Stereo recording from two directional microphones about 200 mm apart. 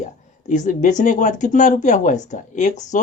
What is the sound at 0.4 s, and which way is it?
Speech, 40° left (ahead or behind).